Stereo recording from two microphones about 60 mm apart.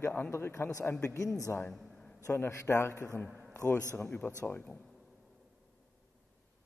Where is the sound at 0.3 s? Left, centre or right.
Left.